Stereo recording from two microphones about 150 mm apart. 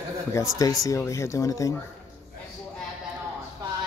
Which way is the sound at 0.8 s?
20° left (ahead or behind).